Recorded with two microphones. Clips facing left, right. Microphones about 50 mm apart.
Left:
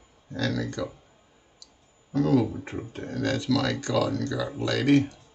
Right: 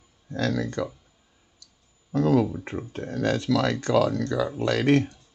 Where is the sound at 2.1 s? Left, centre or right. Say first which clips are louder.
Right 1 dB; right.